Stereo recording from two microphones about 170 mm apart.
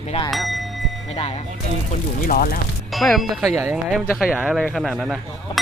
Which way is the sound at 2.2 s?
55° left (ahead or behind).